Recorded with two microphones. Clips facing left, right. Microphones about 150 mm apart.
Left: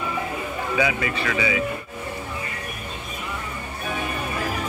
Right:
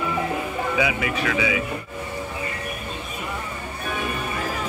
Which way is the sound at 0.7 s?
5° right (ahead or behind).